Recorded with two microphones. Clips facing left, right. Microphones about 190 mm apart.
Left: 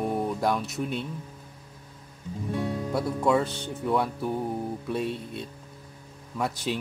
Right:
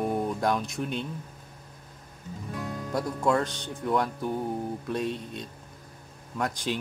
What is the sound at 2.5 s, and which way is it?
Music, 30° left (ahead or behind).